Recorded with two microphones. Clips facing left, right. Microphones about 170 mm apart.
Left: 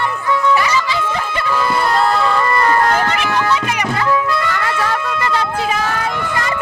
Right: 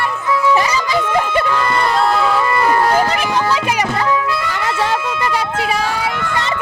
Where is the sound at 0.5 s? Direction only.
40° right (ahead or behind).